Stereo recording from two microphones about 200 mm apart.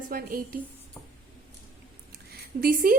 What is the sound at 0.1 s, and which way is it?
Speech, 45° right (ahead or behind).